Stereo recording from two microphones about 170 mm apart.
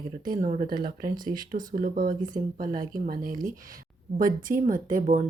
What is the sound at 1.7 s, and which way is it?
Speech, 55° right (ahead or behind).